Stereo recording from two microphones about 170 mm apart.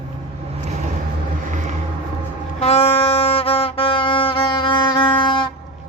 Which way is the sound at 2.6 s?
35° left (ahead or behind).